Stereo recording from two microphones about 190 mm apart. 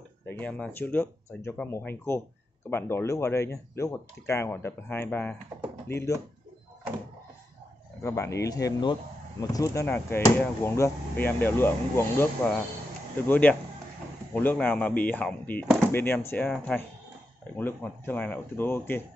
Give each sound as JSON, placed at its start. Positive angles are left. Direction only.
{"t": 0.3, "sound": "speech", "side_deg": 5}
{"t": 8.0, "sound": "speech", "side_deg": 15}